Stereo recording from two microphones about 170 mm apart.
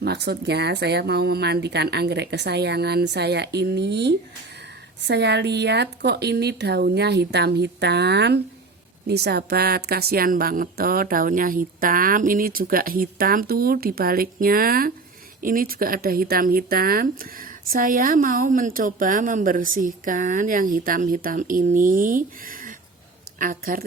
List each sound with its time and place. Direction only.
0.0 s a woman's voice: 75° right (ahead or behind); by 23.8 s 55° right (ahead or behind)